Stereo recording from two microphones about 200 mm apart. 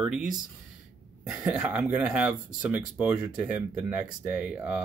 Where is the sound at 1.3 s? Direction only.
5° right (ahead or behind).